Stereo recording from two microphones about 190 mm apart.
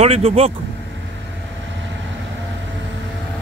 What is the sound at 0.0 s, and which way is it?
Speech, 30° right (ahead or behind).